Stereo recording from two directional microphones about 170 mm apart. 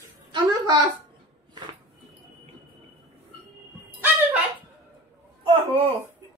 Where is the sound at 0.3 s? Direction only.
25° right (ahead or behind).